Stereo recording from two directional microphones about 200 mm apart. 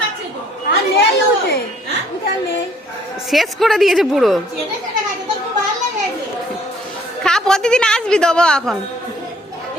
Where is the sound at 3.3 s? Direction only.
Centre (ahead or behind).